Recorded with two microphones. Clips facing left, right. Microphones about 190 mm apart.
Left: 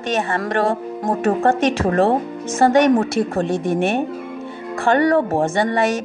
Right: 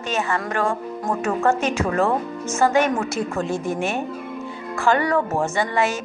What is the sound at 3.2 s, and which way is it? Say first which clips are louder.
Speech: left 5 dB; 60° left (ahead or behind).